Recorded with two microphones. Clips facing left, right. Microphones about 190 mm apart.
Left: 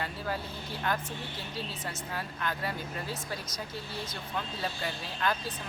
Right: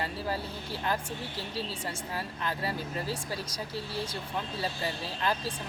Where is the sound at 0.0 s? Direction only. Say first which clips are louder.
Right 2 dB; 30° right (ahead or behind).